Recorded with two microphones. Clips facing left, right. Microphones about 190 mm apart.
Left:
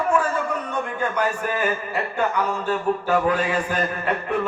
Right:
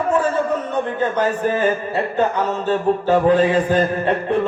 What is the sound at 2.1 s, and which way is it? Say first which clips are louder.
Mantra: right 3 dB; 25° right (ahead or behind).